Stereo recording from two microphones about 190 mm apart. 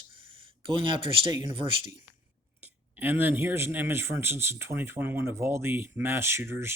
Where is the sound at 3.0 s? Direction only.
10° right (ahead or behind).